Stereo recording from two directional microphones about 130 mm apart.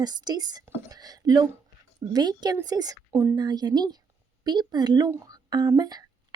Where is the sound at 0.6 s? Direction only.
20° right (ahead or behind).